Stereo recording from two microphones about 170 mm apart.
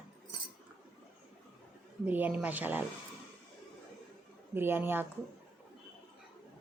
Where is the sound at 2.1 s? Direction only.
10° right (ahead or behind).